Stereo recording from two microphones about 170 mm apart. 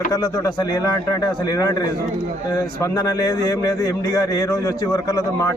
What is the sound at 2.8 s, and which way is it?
A man's voice, 20° left (ahead or behind).